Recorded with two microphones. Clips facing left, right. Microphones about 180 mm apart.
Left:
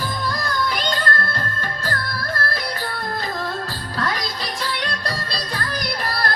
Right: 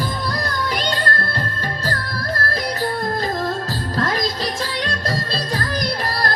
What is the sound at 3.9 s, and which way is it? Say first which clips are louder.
Music: right 4 dB; 40° right (ahead or behind).